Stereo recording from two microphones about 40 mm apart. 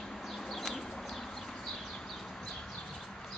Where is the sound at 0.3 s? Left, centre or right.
Centre.